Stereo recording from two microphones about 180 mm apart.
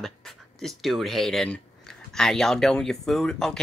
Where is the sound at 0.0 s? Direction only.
Centre (ahead or behind).